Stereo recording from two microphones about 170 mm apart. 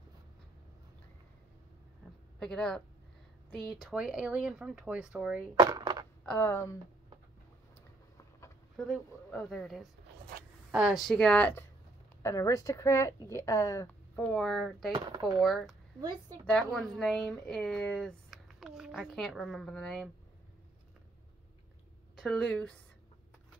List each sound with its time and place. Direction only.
2.4 s a woman's voice: 5° left (ahead or behind)
5.6 s a sound: 25° right (ahead or behind)
6.2 s speech: 10° left (ahead or behind)
8.7 s a woman's voice: 5° right (ahead or behind)
15.0 s speech: 25° right (ahead or behind)
15.2 s a woman's voice: centre (ahead or behind)
22.2 s a woman's voice: centre (ahead or behind)